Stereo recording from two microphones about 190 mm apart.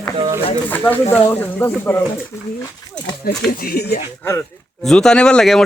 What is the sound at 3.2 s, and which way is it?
Speech, 55° left (ahead or behind).